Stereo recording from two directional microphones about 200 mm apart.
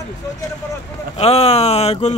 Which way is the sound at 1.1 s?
30° left (ahead or behind).